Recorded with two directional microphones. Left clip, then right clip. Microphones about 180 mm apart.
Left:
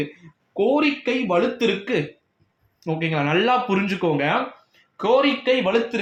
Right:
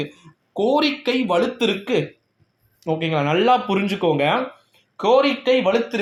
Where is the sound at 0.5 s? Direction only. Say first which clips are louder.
Right 1 dB; 40° right (ahead or behind).